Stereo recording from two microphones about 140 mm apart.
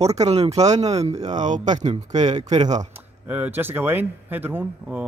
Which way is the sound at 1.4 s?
60° right (ahead or behind).